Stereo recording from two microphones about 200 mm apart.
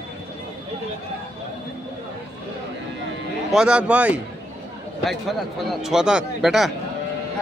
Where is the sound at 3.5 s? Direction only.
5° right (ahead or behind).